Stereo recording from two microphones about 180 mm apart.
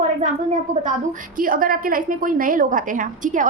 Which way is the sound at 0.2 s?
40° right (ahead or behind).